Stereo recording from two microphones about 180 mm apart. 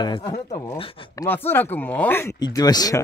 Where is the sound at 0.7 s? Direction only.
30° left (ahead or behind).